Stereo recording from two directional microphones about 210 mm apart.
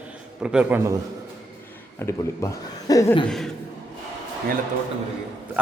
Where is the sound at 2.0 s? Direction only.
15° left (ahead or behind).